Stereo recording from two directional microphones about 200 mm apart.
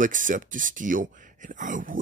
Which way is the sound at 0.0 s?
40° right (ahead or behind).